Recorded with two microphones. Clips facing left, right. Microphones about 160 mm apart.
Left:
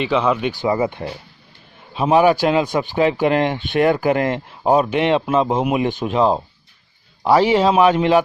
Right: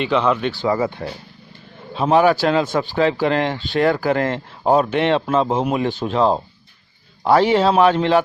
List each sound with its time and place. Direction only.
0.0 s speech: 5° left (ahead or behind)
0.5 s speech: 15° left (ahead or behind)